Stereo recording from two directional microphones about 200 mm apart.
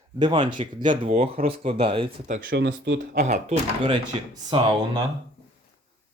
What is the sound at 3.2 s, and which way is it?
Speech, 40° right (ahead or behind).